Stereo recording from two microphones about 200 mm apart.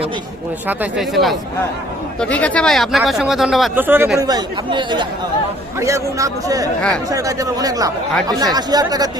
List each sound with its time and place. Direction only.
0.7 s speech: 5° right (ahead or behind)